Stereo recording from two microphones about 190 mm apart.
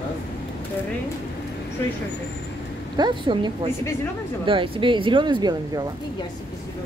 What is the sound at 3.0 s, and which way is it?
Speech, 20° right (ahead or behind).